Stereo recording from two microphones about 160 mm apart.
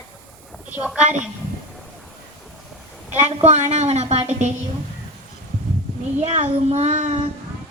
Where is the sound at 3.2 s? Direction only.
45° right (ahead or behind).